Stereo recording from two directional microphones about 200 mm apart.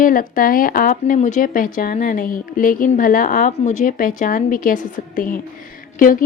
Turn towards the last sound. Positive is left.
turn(degrees=45)  # may be behind; listen again after turning